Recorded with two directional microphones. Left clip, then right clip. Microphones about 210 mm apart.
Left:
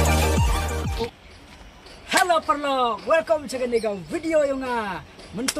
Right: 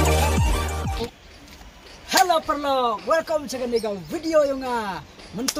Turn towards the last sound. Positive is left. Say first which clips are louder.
# right 1 dB
turn(degrees=0)  # may be behind; listen again after turning